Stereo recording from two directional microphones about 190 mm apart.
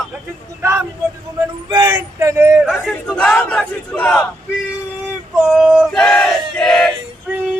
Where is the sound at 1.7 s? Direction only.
20° right (ahead or behind).